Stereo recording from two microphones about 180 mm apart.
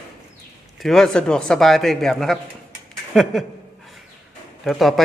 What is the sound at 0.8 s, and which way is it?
Speech, centre (ahead or behind).